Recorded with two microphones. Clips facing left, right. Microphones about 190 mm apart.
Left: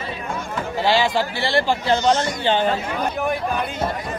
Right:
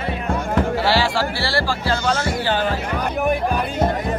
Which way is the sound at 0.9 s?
20° left (ahead or behind).